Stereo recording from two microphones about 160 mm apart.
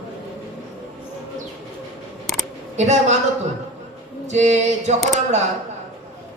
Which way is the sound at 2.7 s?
45° right (ahead or behind).